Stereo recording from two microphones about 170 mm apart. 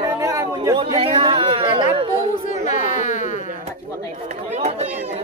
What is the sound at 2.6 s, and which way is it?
Speech, 45° left (ahead or behind).